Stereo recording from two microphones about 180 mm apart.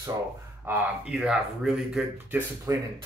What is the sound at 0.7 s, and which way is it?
Speech, 5° right (ahead or behind).